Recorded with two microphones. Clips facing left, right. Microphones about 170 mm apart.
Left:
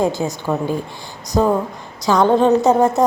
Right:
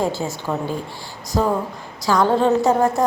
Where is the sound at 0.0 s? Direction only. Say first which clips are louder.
Left 4 dB; 15° left (ahead or behind).